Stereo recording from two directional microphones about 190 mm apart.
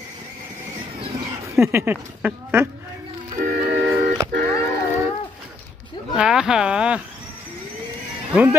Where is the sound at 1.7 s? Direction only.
10° right (ahead or behind).